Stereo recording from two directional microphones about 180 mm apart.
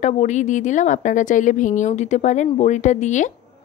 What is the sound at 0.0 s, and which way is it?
Speech, 40° left (ahead or behind).